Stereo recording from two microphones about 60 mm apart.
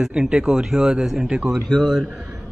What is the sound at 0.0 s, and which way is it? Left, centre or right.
Speech, centre.